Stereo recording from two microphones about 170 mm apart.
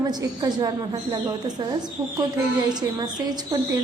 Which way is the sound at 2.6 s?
25° right (ahead or behind).